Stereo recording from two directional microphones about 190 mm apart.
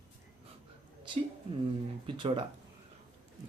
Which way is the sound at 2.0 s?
25° right (ahead or behind).